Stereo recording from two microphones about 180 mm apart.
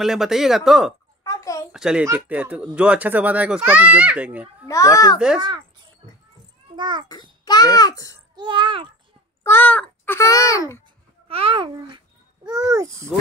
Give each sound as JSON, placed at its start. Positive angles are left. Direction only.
{"t": 0.0, "sound": "speech", "side_deg": 0}
{"t": 1.2, "sound": "a sound", "side_deg": 20}
{"t": 1.7, "sound": "speech", "side_deg": -5}
{"t": 4.6, "sound": "a child's voice", "side_deg": 20}
{"t": 6.7, "sound": "a child's voice", "side_deg": -25}
{"t": 7.4, "sound": "a child's voice", "side_deg": 20}
{"t": 8.4, "sound": "a child's voice", "side_deg": -25}
{"t": 9.4, "sound": "a child's voice", "side_deg": 10}
{"t": 11.2, "sound": "a child's voice", "side_deg": -30}